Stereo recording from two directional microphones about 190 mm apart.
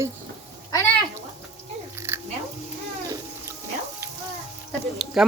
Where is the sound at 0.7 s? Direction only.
15° left (ahead or behind).